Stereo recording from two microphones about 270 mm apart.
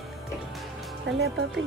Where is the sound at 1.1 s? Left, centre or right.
Right.